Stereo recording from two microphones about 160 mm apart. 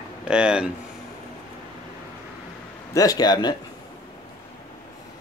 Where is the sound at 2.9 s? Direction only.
25° left (ahead or behind).